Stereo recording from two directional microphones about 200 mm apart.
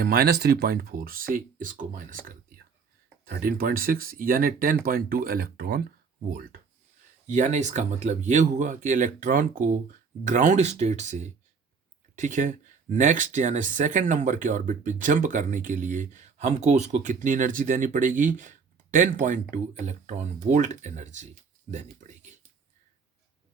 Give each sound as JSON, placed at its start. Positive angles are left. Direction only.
{"t": 0.0, "sound": "speech", "side_deg": -50}
{"t": 7.3, "sound": "speech", "side_deg": -35}